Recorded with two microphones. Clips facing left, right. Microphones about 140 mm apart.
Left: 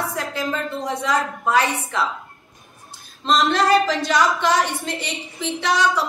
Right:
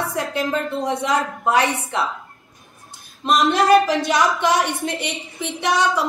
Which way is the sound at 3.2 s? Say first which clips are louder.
Right 2 dB; 15° right (ahead or behind).